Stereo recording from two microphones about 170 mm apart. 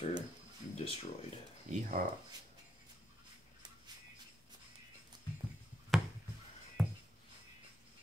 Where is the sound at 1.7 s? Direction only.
45° right (ahead or behind).